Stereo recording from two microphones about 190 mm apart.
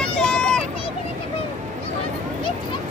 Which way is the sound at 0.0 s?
5° left (ahead or behind).